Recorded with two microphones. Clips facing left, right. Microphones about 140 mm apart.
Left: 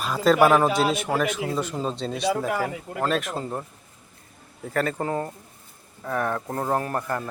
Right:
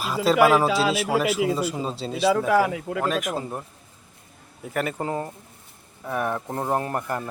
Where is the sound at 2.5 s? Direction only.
90° right.